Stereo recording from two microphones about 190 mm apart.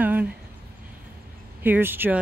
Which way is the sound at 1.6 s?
10° right (ahead or behind).